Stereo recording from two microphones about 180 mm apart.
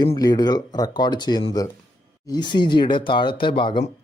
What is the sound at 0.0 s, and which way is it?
Speech, 20° left (ahead or behind).